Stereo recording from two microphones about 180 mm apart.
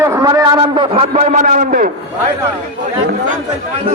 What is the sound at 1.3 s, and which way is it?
Speech, 50° right (ahead or behind).